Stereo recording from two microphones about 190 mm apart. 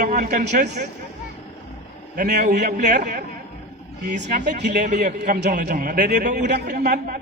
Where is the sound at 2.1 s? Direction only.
45° right (ahead or behind).